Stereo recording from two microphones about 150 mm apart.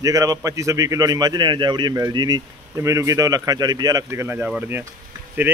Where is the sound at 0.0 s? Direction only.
25° right (ahead or behind).